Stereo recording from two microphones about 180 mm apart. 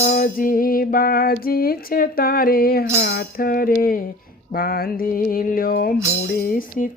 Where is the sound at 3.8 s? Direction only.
50° left (ahead or behind).